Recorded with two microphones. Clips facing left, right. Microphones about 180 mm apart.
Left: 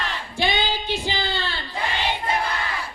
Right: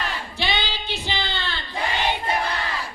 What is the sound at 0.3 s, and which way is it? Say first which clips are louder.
Child singing: left 5 dB; 50° left (ahead or behind).